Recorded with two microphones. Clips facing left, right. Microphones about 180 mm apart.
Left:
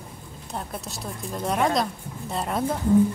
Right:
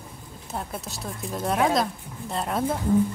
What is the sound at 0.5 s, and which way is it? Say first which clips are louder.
Speech: even; centre (ahead or behind).